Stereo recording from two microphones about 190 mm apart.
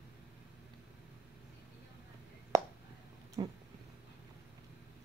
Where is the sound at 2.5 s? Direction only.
15° right (ahead or behind).